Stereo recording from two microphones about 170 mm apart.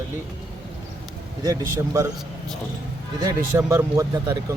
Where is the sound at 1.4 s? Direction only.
20° right (ahead or behind).